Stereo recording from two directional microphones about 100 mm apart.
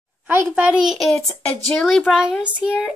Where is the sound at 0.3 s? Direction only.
10° right (ahead or behind); by 2.0 s 5° left (ahead or behind).